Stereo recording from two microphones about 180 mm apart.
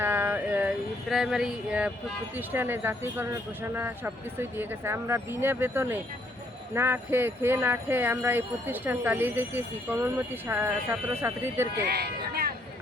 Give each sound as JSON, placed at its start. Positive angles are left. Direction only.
{"t": 0.0, "sound": "a sound", "side_deg": -10}
{"t": 1.1, "sound": "speech", "side_deg": 0}
{"t": 11.9, "sound": "speech", "side_deg": -60}